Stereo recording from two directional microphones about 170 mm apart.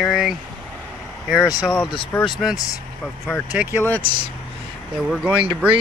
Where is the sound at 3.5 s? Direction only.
10° right (ahead or behind).